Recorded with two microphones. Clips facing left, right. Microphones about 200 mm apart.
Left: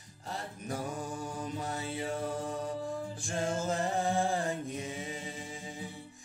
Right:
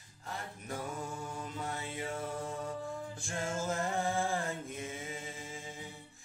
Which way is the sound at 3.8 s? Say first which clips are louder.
Left 3 dB; 35° left (ahead or behind).